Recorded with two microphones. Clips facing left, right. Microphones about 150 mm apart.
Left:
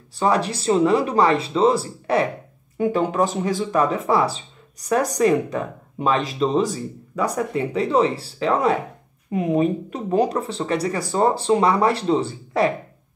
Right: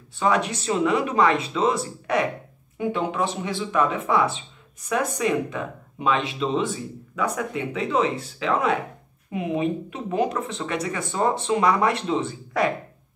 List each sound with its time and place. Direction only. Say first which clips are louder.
0.1 s speech: left 2 dB; 35° left (ahead or behind)
3.1 s speech: left 5 dB; 45° left (ahead or behind)